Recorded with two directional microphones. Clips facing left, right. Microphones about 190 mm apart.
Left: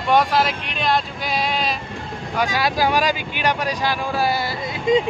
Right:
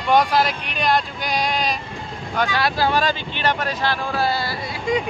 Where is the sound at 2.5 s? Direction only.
15° left (ahead or behind).